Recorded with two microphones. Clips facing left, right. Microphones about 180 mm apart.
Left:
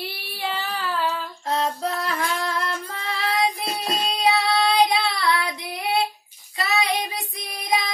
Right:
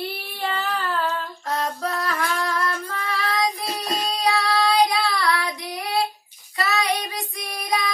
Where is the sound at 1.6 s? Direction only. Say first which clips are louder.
Left 1 dB; 25° left (ahead or behind).